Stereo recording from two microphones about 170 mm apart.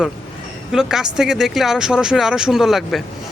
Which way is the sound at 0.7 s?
5° right (ahead or behind).